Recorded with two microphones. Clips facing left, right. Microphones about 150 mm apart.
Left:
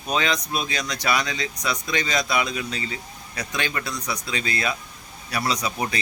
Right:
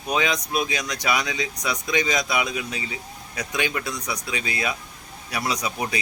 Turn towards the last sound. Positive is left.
turn(degrees=-10)  # may be behind; listen again after turning